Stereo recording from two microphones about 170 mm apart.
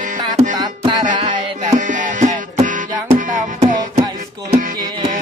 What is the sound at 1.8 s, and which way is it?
Music, 50° right (ahead or behind).